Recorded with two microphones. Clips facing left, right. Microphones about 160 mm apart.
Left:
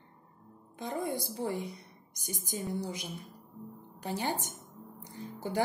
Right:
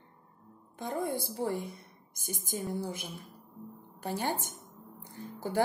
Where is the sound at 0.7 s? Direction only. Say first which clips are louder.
Right 1 dB; 50° right (ahead or behind).